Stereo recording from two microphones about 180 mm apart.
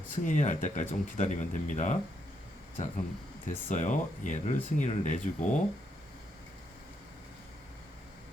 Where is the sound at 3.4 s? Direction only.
45° left (ahead or behind).